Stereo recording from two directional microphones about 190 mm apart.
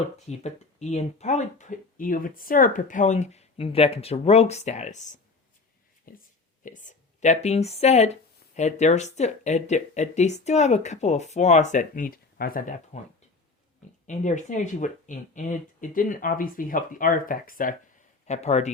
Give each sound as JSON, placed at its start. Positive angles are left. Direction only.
{"t": 0.3, "sound": "speech", "side_deg": 35}
{"t": 6.1, "sound": "speech", "side_deg": 50}
{"t": 14.1, "sound": "speech", "side_deg": 40}